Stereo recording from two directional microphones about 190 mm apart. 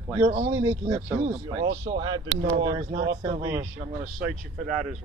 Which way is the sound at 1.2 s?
35° right (ahead or behind).